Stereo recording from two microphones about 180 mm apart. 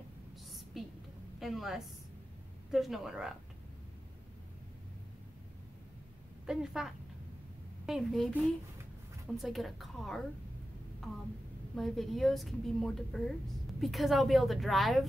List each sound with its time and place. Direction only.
0.8 s a sound: centre (ahead or behind)
1.4 s a woman's voice: centre (ahead or behind)
6.4 s a woman's voice: 5° right (ahead or behind)
9.4 s a woman's voice: centre (ahead or behind)
11.7 s a woman's voice: centre (ahead or behind)